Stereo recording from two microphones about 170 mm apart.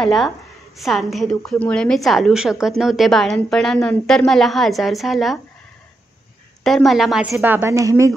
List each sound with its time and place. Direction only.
0.0 s a woman's voice: centre (ahead or behind)
6.6 s a woman's voice: centre (ahead or behind); by 8.1 s 20° right (ahead or behind)